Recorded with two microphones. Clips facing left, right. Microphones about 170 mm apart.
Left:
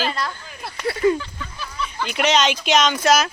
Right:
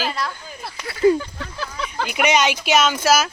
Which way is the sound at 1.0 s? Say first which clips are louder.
Right 3 dB; 30° right (ahead or behind).